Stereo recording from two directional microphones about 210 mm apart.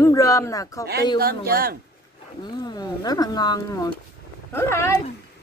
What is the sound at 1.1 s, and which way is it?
Speech, 45° right (ahead or behind).